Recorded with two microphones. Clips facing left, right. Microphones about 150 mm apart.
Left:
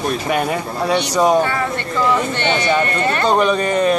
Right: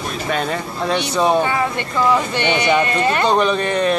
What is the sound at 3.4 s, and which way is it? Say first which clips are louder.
Speech: left 2 dB; 5° left (ahead or behind).